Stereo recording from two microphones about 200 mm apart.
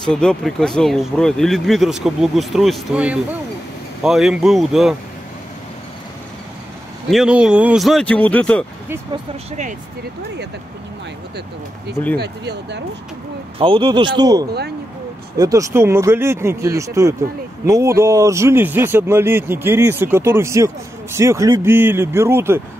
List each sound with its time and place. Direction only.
0.0 s speech: 5° left (ahead or behind)
7.1 s speech: 5° right (ahead or behind)
8.8 s speech: 10° right (ahead or behind)
9.5 s speech: 35° right (ahead or behind)
12.2 s speech: 60° right (ahead or behind)
13.6 s speech: 25° right (ahead or behind)